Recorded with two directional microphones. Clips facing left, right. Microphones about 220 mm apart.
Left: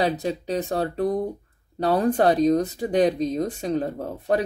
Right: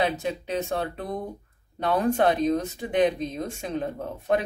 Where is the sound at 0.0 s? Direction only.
35° left (ahead or behind).